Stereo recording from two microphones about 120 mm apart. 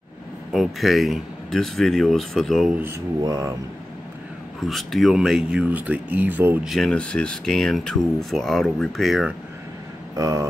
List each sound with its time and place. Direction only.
0.5 s speech: centre (ahead or behind)
3.2 s speech: 25° right (ahead or behind)
4.6 s speech: centre (ahead or behind)
6.6 s speech: centre (ahead or behind)
10.1 s speech: 25° right (ahead or behind)